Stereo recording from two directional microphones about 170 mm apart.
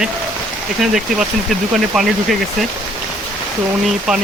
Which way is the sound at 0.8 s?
Centre (ahead or behind).